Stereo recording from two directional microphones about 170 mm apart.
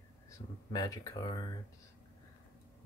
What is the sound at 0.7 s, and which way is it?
Speech, 25° left (ahead or behind).